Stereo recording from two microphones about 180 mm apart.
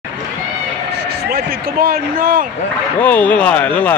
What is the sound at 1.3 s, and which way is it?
Speech, 55° right (ahead or behind).